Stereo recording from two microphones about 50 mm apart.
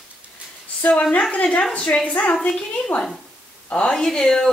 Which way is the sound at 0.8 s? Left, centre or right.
Left.